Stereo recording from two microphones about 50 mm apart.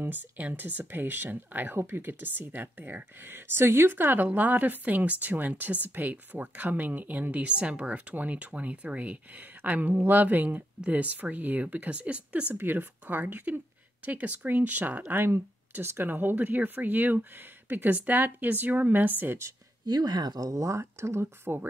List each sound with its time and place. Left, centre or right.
0.4 s a woman's voice: right
7.5 s a woman's voice: right
12.5 s a woman's voice: right
15.7 s a woman's voice: right
20.6 s speech: right